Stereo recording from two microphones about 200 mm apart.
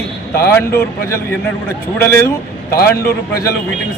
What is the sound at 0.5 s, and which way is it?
A man's voice, 10° left (ahead or behind).